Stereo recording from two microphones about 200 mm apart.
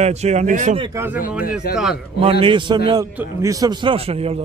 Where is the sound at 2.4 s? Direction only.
25° right (ahead or behind).